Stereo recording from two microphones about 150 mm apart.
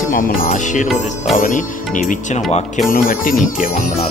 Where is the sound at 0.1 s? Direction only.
65° left (ahead or behind).